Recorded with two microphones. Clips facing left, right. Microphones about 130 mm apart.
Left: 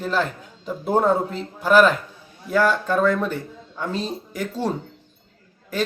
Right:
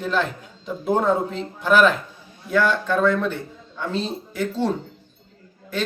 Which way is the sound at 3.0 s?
40° left (ahead or behind).